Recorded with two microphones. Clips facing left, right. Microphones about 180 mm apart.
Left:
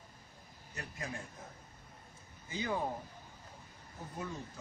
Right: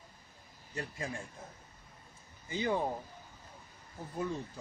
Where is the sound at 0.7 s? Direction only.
30° right (ahead or behind).